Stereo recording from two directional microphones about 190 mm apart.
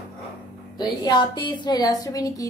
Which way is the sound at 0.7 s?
20° left (ahead or behind).